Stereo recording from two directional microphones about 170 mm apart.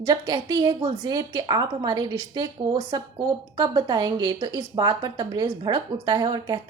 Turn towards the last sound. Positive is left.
turn(degrees=-25)  # may be behind; listen again after turning